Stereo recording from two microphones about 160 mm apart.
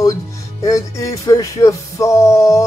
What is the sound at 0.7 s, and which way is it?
Music, 20° left (ahead or behind).